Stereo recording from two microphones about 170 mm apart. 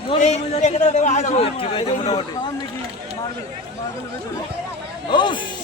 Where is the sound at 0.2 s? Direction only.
45° left (ahead or behind).